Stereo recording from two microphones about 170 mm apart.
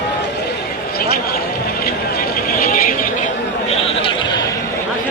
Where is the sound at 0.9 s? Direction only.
65° left (ahead or behind); by 4.4 s 30° left (ahead or behind).